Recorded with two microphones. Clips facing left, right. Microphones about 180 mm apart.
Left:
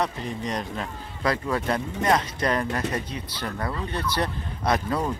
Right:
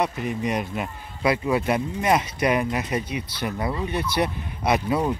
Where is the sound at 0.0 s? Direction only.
10° right (ahead or behind).